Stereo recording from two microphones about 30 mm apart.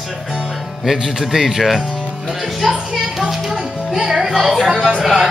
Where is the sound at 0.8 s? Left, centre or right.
Centre.